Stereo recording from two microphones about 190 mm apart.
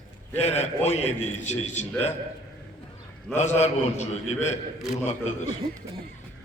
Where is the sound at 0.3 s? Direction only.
35° left (ahead or behind).